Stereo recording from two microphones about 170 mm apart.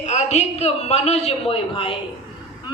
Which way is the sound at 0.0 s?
45° left (ahead or behind).